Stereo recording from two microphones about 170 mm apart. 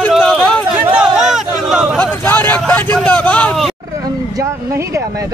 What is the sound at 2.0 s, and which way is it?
Speech, 10° left (ahead or behind).